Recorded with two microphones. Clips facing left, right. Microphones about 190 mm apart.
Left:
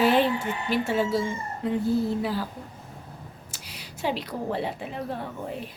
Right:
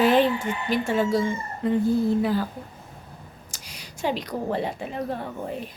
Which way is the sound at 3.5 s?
45° right (ahead or behind).